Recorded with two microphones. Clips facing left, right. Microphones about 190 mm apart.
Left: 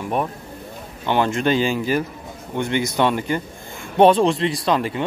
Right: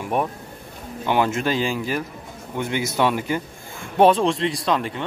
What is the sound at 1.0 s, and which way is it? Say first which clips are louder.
Speech: left 2 dB; 10° right (ahead or behind).